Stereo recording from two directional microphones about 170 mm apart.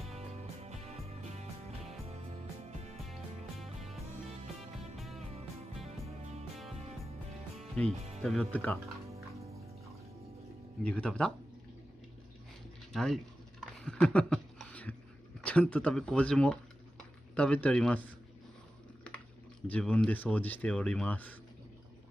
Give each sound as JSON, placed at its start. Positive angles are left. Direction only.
{"t": 0.1, "sound": "music", "side_deg": -40}
{"t": 4.9, "sound": "music", "side_deg": 0}
{"t": 5.9, "sound": "music", "side_deg": -40}
{"t": 7.7, "sound": "speech", "side_deg": 5}
{"t": 10.8, "sound": "speech", "side_deg": 5}
{"t": 12.9, "sound": "a sound", "side_deg": 0}
{"t": 15.4, "sound": "speech", "side_deg": 10}
{"t": 19.7, "sound": "speech", "side_deg": 5}